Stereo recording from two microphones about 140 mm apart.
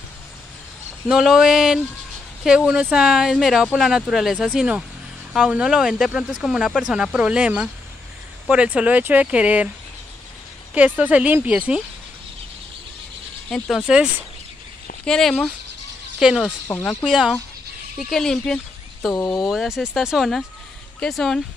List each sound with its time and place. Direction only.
1.0 s speech: 5° right (ahead or behind)
10.7 s speech: 10° right (ahead or behind)
13.5 s speech: 5° left (ahead or behind)
15.0 s speech: 5° left (ahead or behind)
16.4 s speech: 20° left (ahead or behind)
17.0 s speech: 5° right (ahead or behind)